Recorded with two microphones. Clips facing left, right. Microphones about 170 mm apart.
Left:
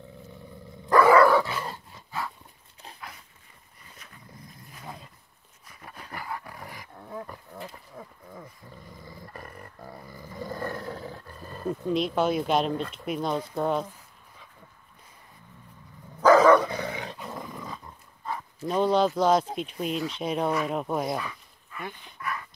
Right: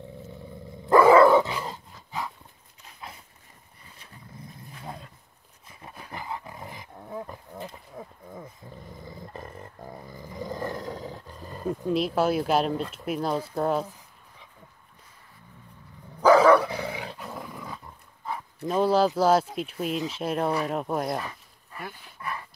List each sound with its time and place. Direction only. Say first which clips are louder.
0.8 s dog: right 2 dB; 25° right (ahead or behind)
5.7 s dog: right 1 dB; 25° right (ahead or behind)
6.1 s roaring cats: right 1 dB; 20° right (ahead or behind)
8.0 s a sound: right 3 dB; 20° right (ahead or behind)
9.0 s roar: right 3 dB; 20° right (ahead or behind)
11.8 s speech: right 1 dB; 5° right (ahead or behind)
16.2 s dog: even; 10° right (ahead or behind)
19.5 s speech: right 1 dB; 5° right (ahead or behind)
21.2 s a sound: even; 35° right (ahead or behind)
22.2 s dog: left 1 dB; 30° right (ahead or behind)